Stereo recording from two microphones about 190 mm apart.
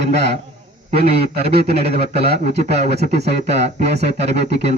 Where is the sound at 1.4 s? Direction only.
55° right (ahead or behind).